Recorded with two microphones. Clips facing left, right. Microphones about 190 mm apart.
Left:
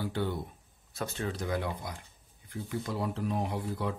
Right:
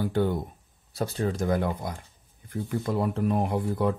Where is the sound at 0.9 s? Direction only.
35° right (ahead or behind).